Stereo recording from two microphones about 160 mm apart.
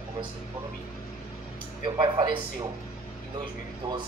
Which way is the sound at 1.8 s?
25° right (ahead or behind).